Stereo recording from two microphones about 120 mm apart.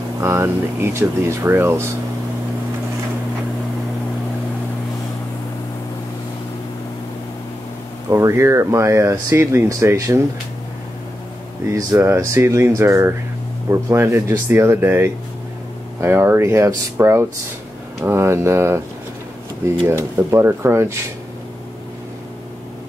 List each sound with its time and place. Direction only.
0.2 s speech: 20° right (ahead or behind)
8.1 s speech: 25° right (ahead or behind)
11.7 s speech: 25° right (ahead or behind)
19.9 s speech: 25° right (ahead or behind)